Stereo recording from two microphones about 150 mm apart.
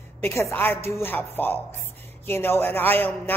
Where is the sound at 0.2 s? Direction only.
15° left (ahead or behind).